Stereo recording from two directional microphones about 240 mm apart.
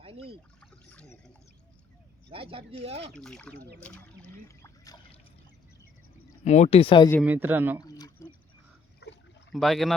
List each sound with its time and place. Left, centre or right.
0.0 s a sound: right
0.6 s speech: centre
2.3 s speech: right
3.2 s speech: centre
6.4 s speech: left
7.2 s speech: centre
7.8 s a sound: centre
9.0 s a sound: left
9.5 s speech: centre